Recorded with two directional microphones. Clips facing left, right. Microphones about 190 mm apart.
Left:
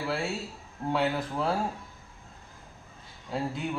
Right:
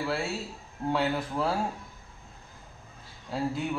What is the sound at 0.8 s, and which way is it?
Speech, centre (ahead or behind).